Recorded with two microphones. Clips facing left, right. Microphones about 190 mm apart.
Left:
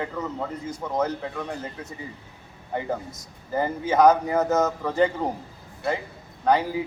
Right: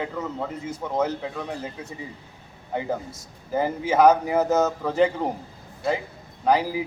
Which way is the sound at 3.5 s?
5° right (ahead or behind).